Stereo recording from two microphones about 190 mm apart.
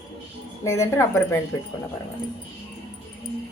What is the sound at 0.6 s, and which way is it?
Speech, 15° left (ahead or behind).